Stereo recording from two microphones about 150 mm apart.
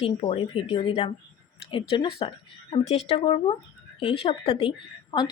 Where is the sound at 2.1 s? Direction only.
40° left (ahead or behind).